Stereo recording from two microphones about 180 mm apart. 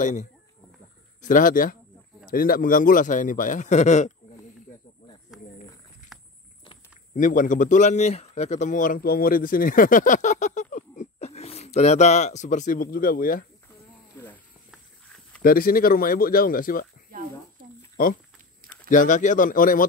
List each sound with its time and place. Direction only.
0.0 s a man's voice: 45° left (ahead or behind)
5.3 s a sound: 5° right (ahead or behind)
6.1 s walk: centre (ahead or behind)
7.2 s a man's voice: 45° left (ahead or behind)
14.7 s horse: 5° left (ahead or behind)
15.4 s a man's voice: 55° left (ahead or behind)
18.9 s a man's voice: 45° left (ahead or behind)